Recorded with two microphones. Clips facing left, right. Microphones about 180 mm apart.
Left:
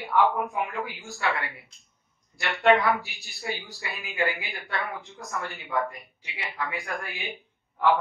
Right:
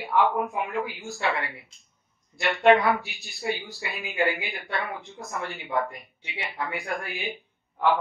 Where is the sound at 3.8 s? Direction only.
20° right (ahead or behind).